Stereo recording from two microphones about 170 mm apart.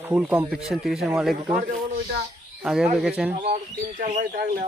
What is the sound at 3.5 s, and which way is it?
Speech, 45° right (ahead or behind).